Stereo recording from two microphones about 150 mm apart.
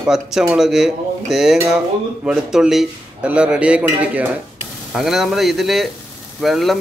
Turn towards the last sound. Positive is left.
turn(degrees=0)  # may be behind; listen again after turning